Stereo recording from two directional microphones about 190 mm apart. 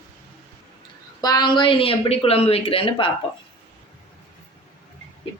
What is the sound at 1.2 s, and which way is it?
A woman's voice, 20° left (ahead or behind).